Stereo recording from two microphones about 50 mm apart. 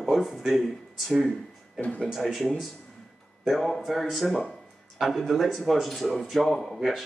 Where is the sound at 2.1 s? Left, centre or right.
Centre.